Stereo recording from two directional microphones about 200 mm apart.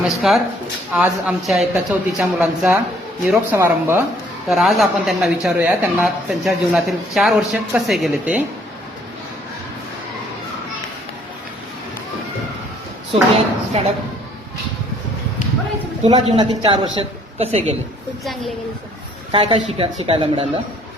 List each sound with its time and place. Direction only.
0.1 s a woman's voice: centre (ahead or behind)
4.4 s a woman's voice: centre (ahead or behind)
13.3 s a woman's voice: 30° right (ahead or behind)
16.2 s a woman's voice: 25° right (ahead or behind)
19.3 s a woman's voice: 25° right (ahead or behind)